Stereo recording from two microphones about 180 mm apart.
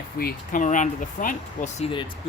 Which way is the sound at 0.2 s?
55° left (ahead or behind).